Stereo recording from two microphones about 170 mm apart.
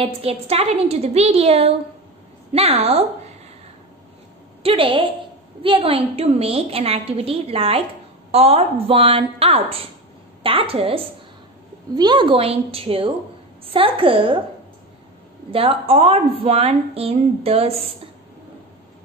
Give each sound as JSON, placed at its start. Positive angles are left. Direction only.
{"t": 0.0, "sound": "a woman's voice", "side_deg": -35}
{"t": 4.6, "sound": "a woman's voice", "side_deg": -30}
{"t": 15.5, "sound": "a woman's voice", "side_deg": -35}